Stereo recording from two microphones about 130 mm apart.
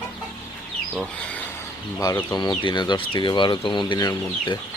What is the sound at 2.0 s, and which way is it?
Speech, 25° left (ahead or behind).